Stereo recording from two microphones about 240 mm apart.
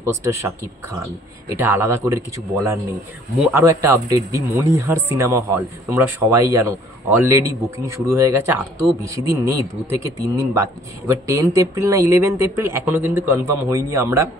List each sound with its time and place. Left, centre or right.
0.0 s speech: centre
1.5 s speech: centre